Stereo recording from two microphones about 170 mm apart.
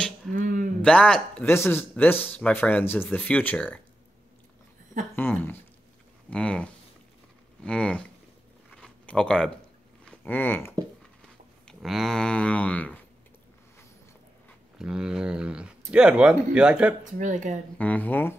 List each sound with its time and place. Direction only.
0.3 s a sound: 50° right (ahead or behind)
0.8 s speech: 5° left (ahead or behind)
5.1 s speech: 10° left (ahead or behind)
8.7 s a sound: 5° left (ahead or behind)
10.0 s speech: 10° left (ahead or behind)
11.6 s speech: centre (ahead or behind)
14.8 s speech: 5° right (ahead or behind)
17.0 s speech: 45° right (ahead or behind)
17.7 s speech: 10° left (ahead or behind)